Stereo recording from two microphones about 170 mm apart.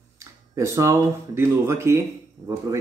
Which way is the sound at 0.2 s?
15° right (ahead or behind).